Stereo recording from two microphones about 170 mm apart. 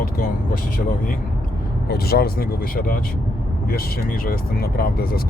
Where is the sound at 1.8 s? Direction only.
65° left (ahead or behind).